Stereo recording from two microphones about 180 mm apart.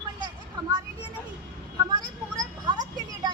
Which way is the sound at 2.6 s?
25° right (ahead or behind).